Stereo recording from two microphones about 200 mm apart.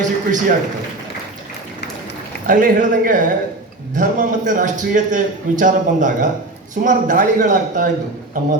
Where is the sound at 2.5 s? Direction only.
40° right (ahead or behind).